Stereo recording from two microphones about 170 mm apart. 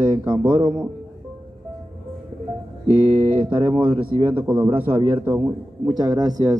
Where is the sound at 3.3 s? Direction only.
30° right (ahead or behind).